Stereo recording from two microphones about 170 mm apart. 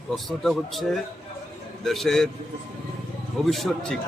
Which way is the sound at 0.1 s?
Centre (ahead or behind).